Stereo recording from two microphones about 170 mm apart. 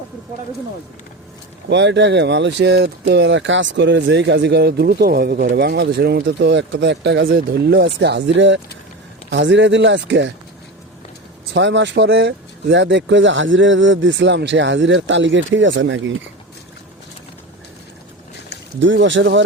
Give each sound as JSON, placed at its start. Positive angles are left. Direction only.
{"t": 1.7, "sound": "speech", "side_deg": -90}
{"t": 11.5, "sound": "speech", "side_deg": -90}
{"t": 18.8, "sound": "speech", "side_deg": -90}